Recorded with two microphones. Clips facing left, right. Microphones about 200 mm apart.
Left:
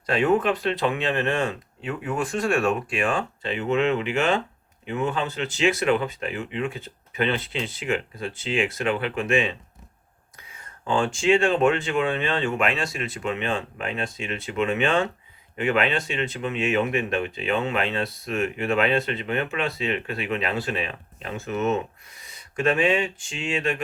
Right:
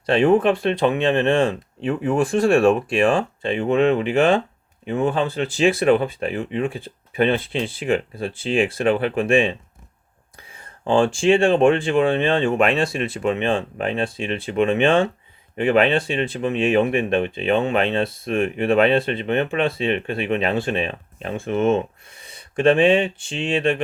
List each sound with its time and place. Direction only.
0.0 s speech: 30° right (ahead or behind)